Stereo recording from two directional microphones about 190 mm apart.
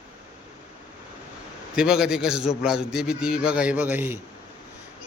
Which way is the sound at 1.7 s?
5° right (ahead or behind).